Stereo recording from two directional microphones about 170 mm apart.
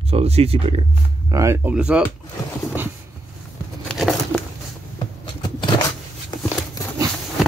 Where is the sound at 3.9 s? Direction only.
Centre (ahead or behind).